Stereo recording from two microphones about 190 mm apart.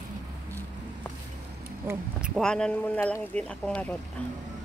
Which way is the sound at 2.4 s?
5° left (ahead or behind).